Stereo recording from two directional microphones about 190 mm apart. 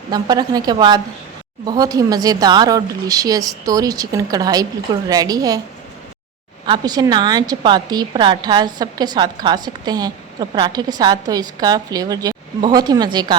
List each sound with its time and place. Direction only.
0.1 s a woman's voice: 20° right (ahead or behind)
6.7 s a woman's voice: 20° right (ahead or behind)